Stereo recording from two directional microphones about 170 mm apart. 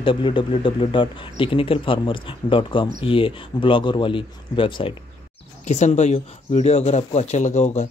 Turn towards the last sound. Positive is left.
turn(degrees=40)  # may be behind; listen again after turning